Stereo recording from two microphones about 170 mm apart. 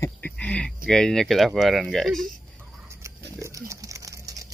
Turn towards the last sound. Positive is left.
turn(degrees=-20)  # may be behind; listen again after turning